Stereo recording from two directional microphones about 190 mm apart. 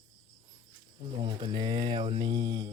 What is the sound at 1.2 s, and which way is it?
Mantra, 25° right (ahead or behind).